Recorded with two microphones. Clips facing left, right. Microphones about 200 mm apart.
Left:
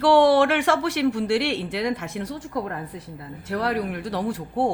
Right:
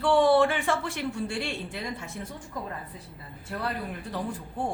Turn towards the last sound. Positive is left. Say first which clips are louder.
# left 8 dB
turn(degrees=90)